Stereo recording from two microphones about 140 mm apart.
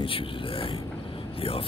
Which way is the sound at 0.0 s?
40° left (ahead or behind).